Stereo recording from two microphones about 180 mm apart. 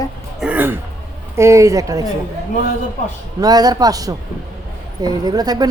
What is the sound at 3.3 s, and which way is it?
Speech, 20° right (ahead or behind).